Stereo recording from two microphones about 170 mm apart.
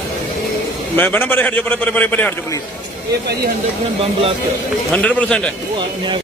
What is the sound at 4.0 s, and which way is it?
Speech, 35° right (ahead or behind).